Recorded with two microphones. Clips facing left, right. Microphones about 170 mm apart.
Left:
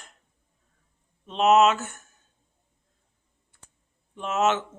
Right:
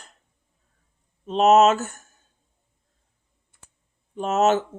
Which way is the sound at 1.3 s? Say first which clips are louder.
Right 3 dB; 40° right (ahead or behind).